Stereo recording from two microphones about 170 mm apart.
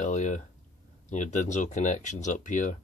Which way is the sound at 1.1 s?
45° left (ahead or behind).